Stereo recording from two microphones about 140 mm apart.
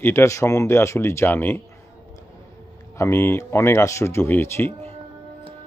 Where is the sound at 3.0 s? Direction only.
20° left (ahead or behind).